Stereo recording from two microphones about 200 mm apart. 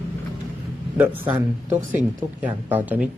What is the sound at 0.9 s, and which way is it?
Speech, 10° right (ahead or behind).